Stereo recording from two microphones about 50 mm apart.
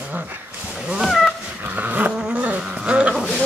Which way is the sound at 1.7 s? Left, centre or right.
Right.